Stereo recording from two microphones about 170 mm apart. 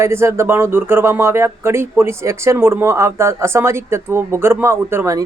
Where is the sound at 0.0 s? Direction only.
15° right (ahead or behind).